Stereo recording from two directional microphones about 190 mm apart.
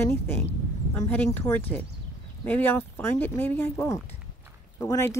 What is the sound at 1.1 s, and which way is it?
Speech, 10° left (ahead or behind).